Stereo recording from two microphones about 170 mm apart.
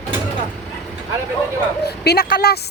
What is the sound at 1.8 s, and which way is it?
Speech, 70° left (ahead or behind).